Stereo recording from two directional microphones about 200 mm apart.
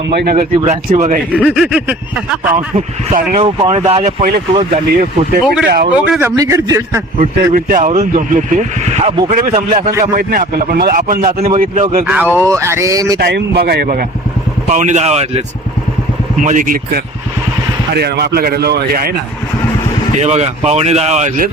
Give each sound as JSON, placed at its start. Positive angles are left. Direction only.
{"t": 0.1, "sound": "speech", "side_deg": -55}
{"t": 0.3, "sound": "speech", "side_deg": -30}
{"t": 1.3, "sound": "speech", "side_deg": 0}
{"t": 2.7, "sound": "speech", "side_deg": -35}
{"t": 5.6, "sound": "speech", "side_deg": -50}
{"t": 5.9, "sound": "speech", "side_deg": -10}
{"t": 7.2, "sound": "speech", "side_deg": -40}
{"t": 10.0, "sound": "speech", "side_deg": -45}
{"t": 12.0, "sound": "speech", "side_deg": -10}
{"t": 13.1, "sound": "speech", "side_deg": -55}
{"t": 17.9, "sound": "speech", "side_deg": -55}
{"t": 20.1, "sound": "speech", "side_deg": -35}